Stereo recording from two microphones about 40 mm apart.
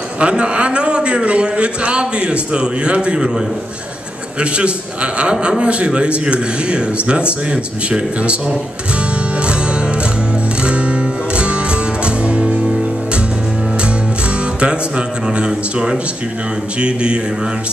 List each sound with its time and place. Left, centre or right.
0.2 s a man's voice: right
9.4 s music: right
14.6 s music: right
15.3 s a man's voice: centre